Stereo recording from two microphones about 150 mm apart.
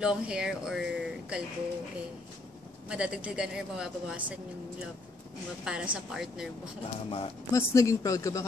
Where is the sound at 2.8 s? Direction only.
5° right (ahead or behind).